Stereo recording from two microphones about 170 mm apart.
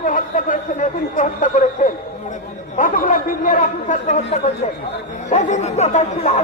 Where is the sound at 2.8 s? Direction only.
55° left (ahead or behind).